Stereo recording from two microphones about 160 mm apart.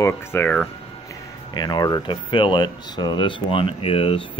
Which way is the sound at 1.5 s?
25° left (ahead or behind).